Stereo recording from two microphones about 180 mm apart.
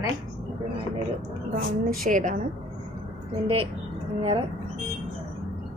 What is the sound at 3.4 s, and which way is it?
Speech, 30° right (ahead or behind).